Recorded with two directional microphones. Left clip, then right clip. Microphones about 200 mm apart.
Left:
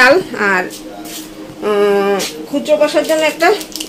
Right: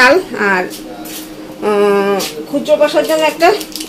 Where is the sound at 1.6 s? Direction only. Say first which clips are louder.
Right 1 dB; 5° right (ahead or behind).